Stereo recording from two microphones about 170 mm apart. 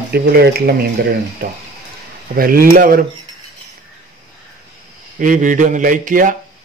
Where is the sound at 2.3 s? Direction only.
55° right (ahead or behind).